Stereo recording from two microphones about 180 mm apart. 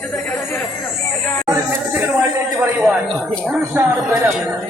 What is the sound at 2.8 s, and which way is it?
A man's voice, 5° right (ahead or behind).